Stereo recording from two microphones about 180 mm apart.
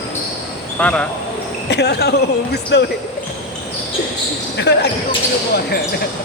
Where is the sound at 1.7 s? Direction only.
70° left (ahead or behind).